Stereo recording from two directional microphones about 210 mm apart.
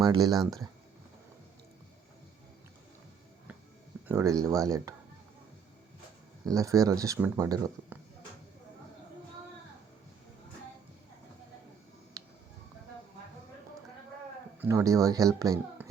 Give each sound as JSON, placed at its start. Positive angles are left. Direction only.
{"t": 0.0, "sound": "speech", "side_deg": -20}
{"t": 4.1, "sound": "speech", "side_deg": -15}
{"t": 6.4, "sound": "speech", "side_deg": -15}
{"t": 14.6, "sound": "speech", "side_deg": -15}